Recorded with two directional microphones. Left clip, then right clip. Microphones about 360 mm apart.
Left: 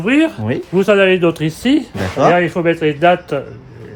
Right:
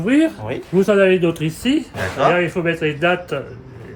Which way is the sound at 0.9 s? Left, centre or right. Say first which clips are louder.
Left 3 dB; centre.